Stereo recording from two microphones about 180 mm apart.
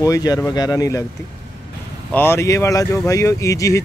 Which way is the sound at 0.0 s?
20° left (ahead or behind).